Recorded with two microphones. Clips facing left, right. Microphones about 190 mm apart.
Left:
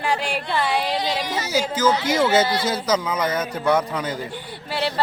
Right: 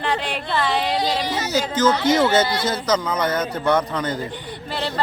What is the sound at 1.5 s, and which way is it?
Speech, 10° left (ahead or behind).